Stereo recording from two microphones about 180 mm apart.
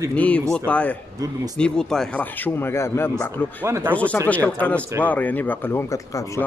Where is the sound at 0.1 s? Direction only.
5° left (ahead or behind).